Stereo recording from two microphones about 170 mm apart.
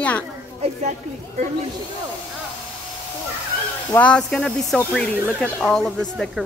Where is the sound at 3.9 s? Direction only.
5° left (ahead or behind).